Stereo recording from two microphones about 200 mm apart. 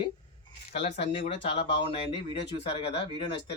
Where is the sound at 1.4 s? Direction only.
30° left (ahead or behind).